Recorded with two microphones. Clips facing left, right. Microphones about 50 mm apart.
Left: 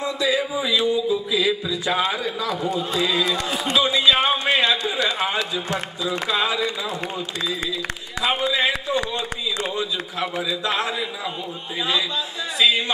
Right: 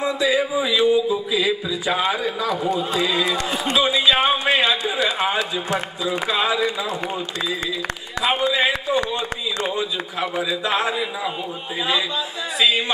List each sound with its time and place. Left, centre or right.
0.0 s a man's voice: centre
3.3 s a man's voice: centre
3.8 s a man's voice: centre
8.2 s a man's voice: centre
12.5 s a man's voice: centre